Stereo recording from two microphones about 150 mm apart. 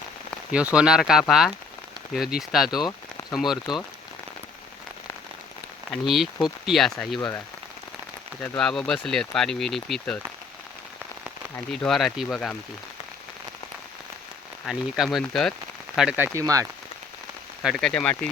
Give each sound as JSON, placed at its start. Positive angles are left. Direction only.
{"t": 0.5, "sound": "speech", "side_deg": -5}
{"t": 5.9, "sound": "speech", "side_deg": 0}
{"t": 7.2, "sound": "rain on surface", "side_deg": 20}
{"t": 8.4, "sound": "speech", "side_deg": 5}
{"t": 11.7, "sound": "speech", "side_deg": 0}
{"t": 14.7, "sound": "speech", "side_deg": 0}
{"t": 16.0, "sound": "speech", "side_deg": -10}
{"t": 17.6, "sound": "speech", "side_deg": 0}